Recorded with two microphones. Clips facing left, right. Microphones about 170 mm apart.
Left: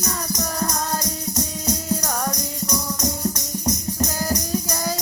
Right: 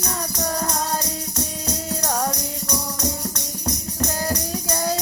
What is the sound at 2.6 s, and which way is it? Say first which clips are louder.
Music: left 2 dB; 10° left (ahead or behind).